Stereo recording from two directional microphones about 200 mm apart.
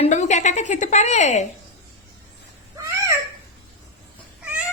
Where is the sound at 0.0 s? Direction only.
35° left (ahead or behind).